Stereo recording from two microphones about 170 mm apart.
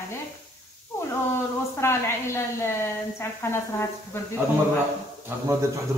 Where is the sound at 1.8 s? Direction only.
15° left (ahead or behind).